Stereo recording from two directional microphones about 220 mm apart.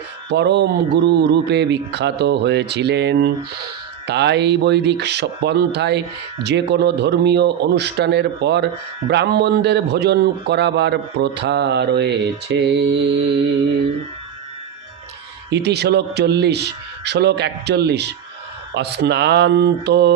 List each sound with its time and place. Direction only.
0.3 s a man's voice: 50° right (ahead or behind)
15.5 s a man's voice: 50° right (ahead or behind)